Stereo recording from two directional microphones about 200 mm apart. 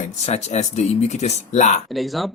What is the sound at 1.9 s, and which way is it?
Speech, centre (ahead or behind).